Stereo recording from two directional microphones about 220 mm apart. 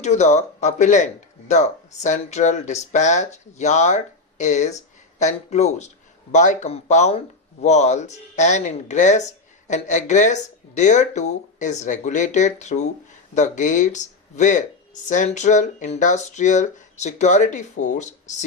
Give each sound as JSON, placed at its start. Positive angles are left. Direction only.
{"t": 0.0, "sound": "speech", "side_deg": 30}